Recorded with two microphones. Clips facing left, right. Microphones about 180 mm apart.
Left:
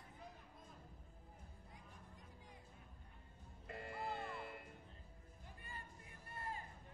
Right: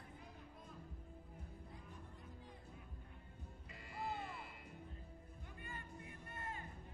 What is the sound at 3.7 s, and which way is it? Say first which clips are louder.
Music: left 1 dB; 55° left (ahead or behind).